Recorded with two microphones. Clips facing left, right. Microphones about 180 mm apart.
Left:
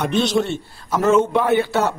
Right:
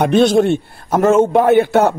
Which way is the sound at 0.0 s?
55° right (ahead or behind).